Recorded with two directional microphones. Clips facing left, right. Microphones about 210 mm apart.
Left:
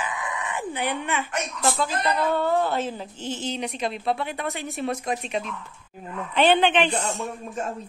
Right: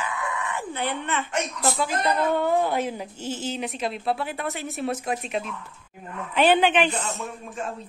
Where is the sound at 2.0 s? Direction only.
15° right (ahead or behind).